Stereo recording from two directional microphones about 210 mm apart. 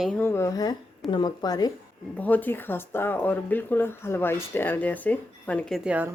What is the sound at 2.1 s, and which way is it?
Speech, 10° left (ahead or behind).